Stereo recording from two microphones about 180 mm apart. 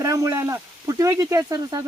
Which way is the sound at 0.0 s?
15° right (ahead or behind).